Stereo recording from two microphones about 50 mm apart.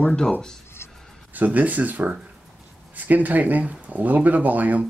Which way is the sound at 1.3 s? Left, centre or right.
Right.